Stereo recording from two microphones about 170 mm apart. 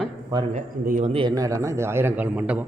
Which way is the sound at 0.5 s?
45° right (ahead or behind).